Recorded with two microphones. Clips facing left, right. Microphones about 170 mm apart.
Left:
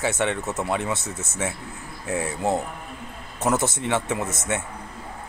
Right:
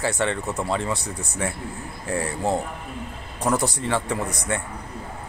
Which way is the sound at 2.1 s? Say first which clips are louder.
Even; centre (ahead or behind).